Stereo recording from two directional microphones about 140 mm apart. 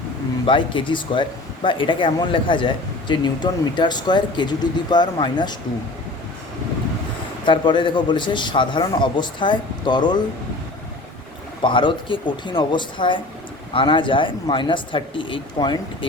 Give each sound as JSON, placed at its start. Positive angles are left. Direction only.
{"t": 0.4, "sound": "speech", "side_deg": 35}
{"t": 7.4, "sound": "speech", "side_deg": 35}
{"t": 11.6, "sound": "speech", "side_deg": 35}